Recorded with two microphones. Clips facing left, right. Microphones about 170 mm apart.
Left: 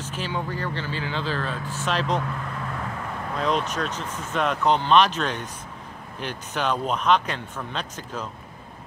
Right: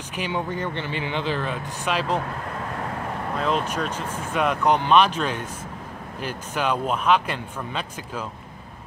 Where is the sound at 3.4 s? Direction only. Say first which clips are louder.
Even; 5° right (ahead or behind).